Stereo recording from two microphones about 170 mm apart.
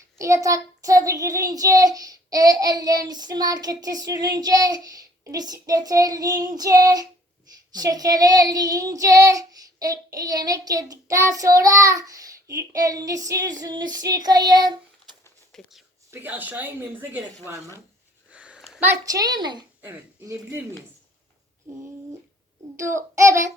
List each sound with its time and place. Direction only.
0.2 s child singing: 20° right (ahead or behind)
15.5 s a sound: 5° left (ahead or behind)
16.1 s speech: 10° right (ahead or behind)
18.3 s a sound: 5° right (ahead or behind)
19.0 s child singing: 20° right (ahead or behind)
19.8 s speech: 15° right (ahead or behind)
22.8 s speech: 15° right (ahead or behind)